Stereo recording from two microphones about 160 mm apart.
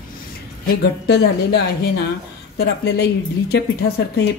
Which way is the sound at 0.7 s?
90° left.